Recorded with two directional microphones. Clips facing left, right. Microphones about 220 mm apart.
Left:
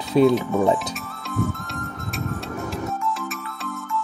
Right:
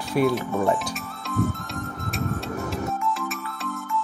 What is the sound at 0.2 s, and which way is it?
Speech, 25° left (ahead or behind).